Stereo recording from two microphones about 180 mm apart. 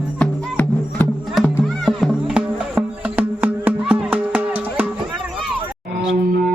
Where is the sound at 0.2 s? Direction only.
10° left (ahead or behind); by 4.9 s 5° right (ahead or behind).